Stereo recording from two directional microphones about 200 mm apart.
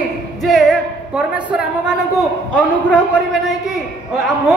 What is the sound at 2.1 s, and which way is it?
A man's voice, 5° left (ahead or behind).